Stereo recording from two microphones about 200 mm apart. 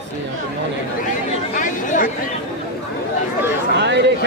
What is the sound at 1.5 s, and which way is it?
Speech, 40° left (ahead or behind).